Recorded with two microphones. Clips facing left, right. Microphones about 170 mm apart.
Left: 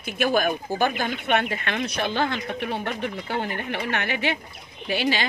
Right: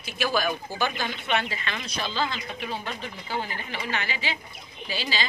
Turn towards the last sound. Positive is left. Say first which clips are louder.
# left 7 dB
turn(degrees=60)  # may be behind; listen again after turning